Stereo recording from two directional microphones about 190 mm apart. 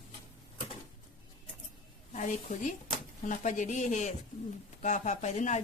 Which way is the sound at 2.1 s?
40° left (ahead or behind).